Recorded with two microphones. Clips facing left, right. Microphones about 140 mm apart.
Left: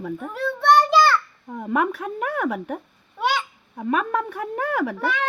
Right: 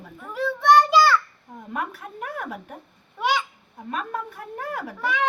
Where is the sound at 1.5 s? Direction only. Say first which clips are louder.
Left 9 dB; 90° left.